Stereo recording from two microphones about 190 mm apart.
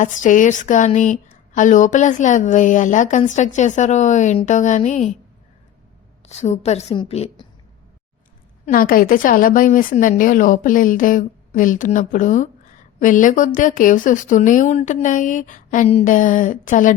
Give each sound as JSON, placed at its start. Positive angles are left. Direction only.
{"t": 0.0, "sound": "speech", "side_deg": 40}
{"t": 6.2, "sound": "speech", "side_deg": 35}
{"t": 8.6, "sound": "a woman's voice", "side_deg": 50}